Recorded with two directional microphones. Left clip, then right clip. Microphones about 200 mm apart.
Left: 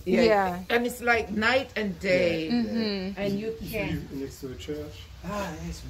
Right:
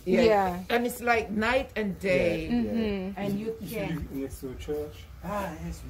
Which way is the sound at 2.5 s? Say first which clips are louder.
Left 1 dB; 10° right (ahead or behind).